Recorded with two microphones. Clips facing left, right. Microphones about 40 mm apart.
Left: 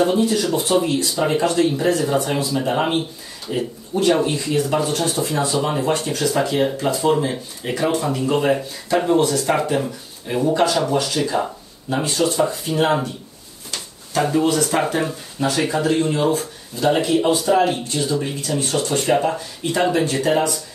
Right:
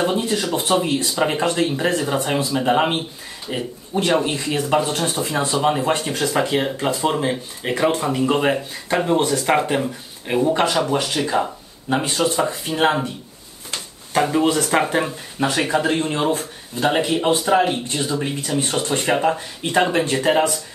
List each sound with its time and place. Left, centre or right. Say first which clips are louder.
0.0 s speech: left 3 dB; right
14.4 s speech: even; right